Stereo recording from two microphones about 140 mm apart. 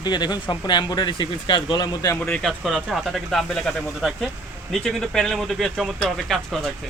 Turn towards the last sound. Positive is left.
turn(degrees=0)  # may be behind; listen again after turning